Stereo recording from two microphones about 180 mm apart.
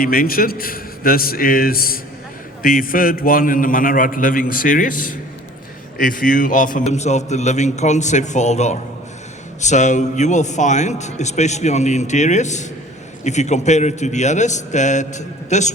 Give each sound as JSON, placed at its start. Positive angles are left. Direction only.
{"t": 0.0, "sound": "a man's voice", "side_deg": 55}